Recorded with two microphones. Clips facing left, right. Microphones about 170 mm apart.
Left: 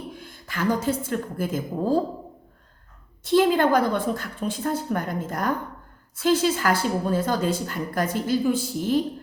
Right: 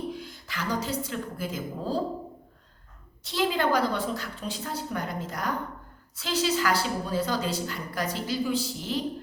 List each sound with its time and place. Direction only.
0.1 s a woman's voice: 50° left (ahead or behind)
3.2 s a woman's voice: 50° left (ahead or behind)